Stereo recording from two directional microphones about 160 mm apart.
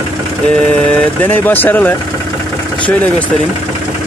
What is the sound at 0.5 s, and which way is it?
Speech, 10° left (ahead or behind).